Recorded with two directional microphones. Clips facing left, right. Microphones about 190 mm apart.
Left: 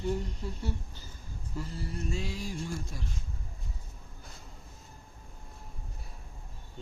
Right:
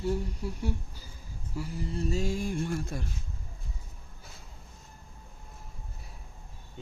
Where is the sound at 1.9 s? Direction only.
35° right (ahead or behind); by 3.0 s 60° right (ahead or behind).